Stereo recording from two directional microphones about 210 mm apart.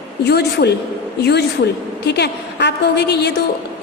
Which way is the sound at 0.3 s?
50° left (ahead or behind).